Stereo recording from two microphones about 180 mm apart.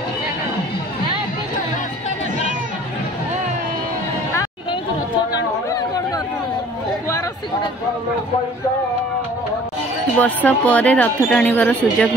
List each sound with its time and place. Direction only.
5.3 s chatter: 20° left (ahead or behind)
10.1 s speech: 5° left (ahead or behind)